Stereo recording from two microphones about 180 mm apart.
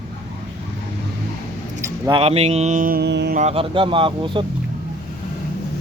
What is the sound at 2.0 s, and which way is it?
Speech, 30° right (ahead or behind).